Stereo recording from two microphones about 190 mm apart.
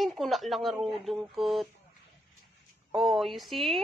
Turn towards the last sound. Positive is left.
turn(degrees=0)  # may be behind; listen again after turning